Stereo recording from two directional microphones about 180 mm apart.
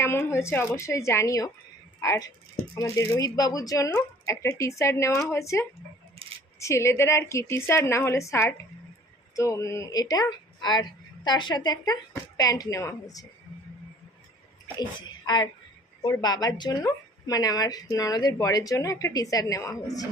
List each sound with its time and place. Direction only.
0.0 s a woman's voice: 15° left (ahead or behind)
15.3 s a woman's voice: 25° left (ahead or behind)